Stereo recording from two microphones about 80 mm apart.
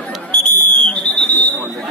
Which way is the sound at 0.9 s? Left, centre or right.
Left.